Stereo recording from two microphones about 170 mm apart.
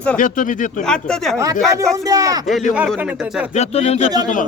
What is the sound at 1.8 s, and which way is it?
Speech, 20° right (ahead or behind).